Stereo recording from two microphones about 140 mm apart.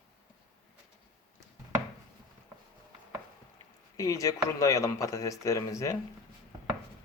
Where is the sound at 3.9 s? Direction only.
25° left (ahead or behind).